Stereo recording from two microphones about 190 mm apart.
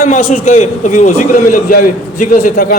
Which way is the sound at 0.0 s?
45° left (ahead or behind).